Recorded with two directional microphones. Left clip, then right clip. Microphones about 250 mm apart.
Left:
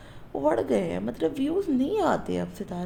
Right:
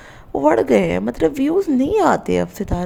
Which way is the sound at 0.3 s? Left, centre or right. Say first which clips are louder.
Right 10 dB; right.